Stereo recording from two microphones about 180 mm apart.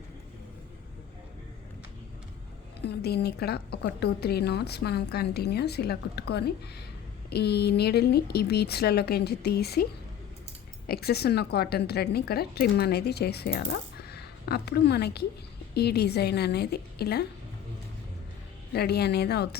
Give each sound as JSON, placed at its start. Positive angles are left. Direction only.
{"t": 2.8, "sound": "speech", "side_deg": 65}
{"t": 10.8, "sound": "speech", "side_deg": 60}
{"t": 18.7, "sound": "speech", "side_deg": 60}